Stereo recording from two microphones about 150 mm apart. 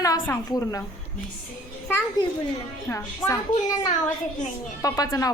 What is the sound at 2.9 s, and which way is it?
Speech, 20° left (ahead or behind).